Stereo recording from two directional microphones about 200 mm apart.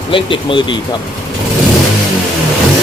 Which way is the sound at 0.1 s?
25° left (ahead or behind).